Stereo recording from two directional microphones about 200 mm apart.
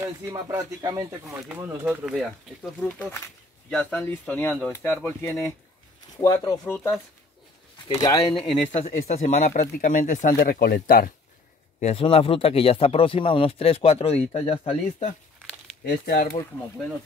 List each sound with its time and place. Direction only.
0.0 s speech: 15° right (ahead or behind); by 8.5 s 20° left (ahead or behind)
8.7 s speech: 35° left (ahead or behind)
11.8 s speech: 30° left (ahead or behind)
15.8 s speech: 50° left (ahead or behind)